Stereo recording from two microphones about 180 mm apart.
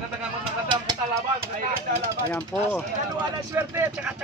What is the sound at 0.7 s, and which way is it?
Speech, 25° right (ahead or behind).